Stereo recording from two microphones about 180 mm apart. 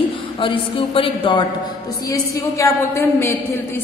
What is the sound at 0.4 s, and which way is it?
A man's voice, 30° left (ahead or behind).